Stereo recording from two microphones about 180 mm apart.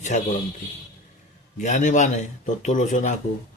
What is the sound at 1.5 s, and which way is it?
A man's voice, 40° left (ahead or behind).